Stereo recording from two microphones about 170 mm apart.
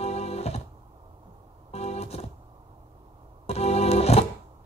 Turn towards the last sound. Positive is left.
turn(degrees=40)  # may be behind; listen again after turning